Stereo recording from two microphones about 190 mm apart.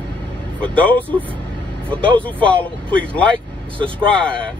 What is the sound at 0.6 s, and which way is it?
Speech, 5° left (ahead or behind).